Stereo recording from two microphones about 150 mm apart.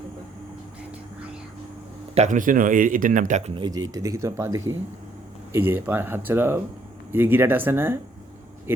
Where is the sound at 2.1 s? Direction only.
50° right (ahead or behind).